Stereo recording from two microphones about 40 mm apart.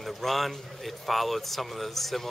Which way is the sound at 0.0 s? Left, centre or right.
Centre.